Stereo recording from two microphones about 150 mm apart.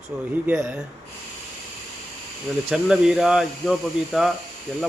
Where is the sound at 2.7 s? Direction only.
5° right (ahead or behind).